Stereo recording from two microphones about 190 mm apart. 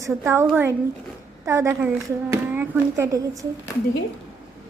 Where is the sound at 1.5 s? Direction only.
15° right (ahead or behind).